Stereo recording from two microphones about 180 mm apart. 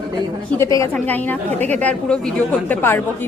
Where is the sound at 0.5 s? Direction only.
15° left (ahead or behind).